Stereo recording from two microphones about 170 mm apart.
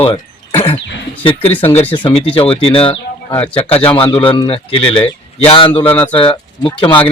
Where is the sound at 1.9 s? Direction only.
30° left (ahead or behind).